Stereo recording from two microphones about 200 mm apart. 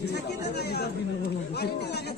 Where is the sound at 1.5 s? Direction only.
55° left (ahead or behind).